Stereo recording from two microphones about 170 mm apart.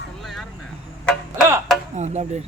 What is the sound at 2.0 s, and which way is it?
Speech, 40° right (ahead or behind).